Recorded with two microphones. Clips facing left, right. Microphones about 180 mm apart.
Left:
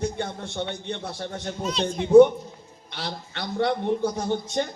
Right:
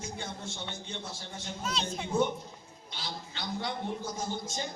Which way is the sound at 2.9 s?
65° left (ahead or behind).